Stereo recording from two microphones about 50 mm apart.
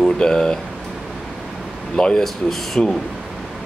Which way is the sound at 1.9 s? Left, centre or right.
Centre.